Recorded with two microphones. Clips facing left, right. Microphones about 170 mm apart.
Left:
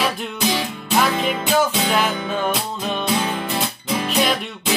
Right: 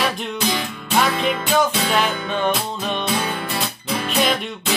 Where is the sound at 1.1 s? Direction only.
5° left (ahead or behind).